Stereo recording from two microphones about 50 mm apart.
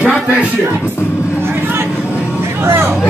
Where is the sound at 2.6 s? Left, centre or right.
Right.